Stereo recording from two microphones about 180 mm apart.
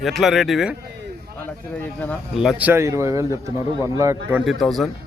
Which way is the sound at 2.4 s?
5° right (ahead or behind).